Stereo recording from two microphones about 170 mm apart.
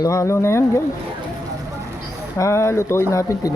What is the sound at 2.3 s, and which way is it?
Speech, 15° left (ahead or behind).